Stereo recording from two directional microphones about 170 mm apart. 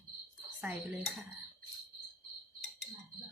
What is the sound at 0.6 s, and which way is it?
Speech, 10° right (ahead or behind).